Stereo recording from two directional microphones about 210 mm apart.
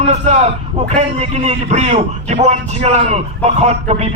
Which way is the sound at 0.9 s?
30° right (ahead or behind).